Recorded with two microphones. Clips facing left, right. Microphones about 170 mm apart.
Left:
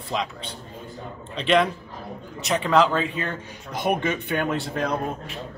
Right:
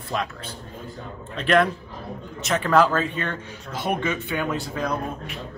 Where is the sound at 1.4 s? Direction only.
Centre (ahead or behind).